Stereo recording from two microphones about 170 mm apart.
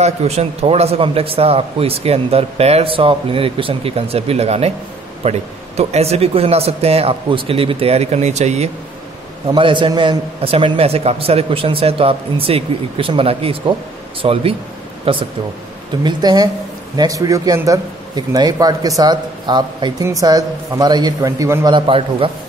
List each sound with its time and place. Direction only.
0.0 s a man's voice: 40° right (ahead or behind)
9.5 s a man's voice: 30° right (ahead or behind)
21.7 s a man's voice: 30° right (ahead or behind)